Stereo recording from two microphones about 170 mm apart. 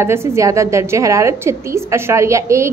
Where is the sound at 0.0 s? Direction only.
15° right (ahead or behind).